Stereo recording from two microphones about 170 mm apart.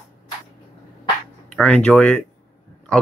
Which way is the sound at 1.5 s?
5° left (ahead or behind).